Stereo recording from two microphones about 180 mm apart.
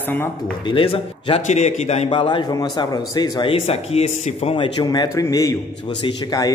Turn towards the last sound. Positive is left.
turn(degrees=25)  # may be behind; listen again after turning